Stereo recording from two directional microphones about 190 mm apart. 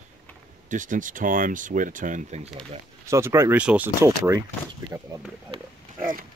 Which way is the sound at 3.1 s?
15° right (ahead or behind).